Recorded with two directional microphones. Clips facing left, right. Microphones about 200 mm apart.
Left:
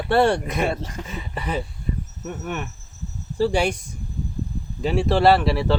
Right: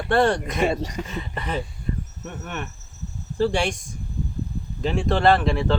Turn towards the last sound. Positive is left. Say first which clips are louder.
# left 2 dB
turn(degrees=5)  # may be behind; listen again after turning